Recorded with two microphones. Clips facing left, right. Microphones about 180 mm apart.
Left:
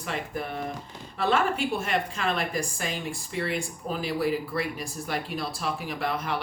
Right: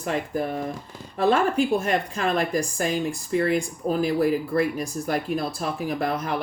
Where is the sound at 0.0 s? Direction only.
40° right (ahead or behind).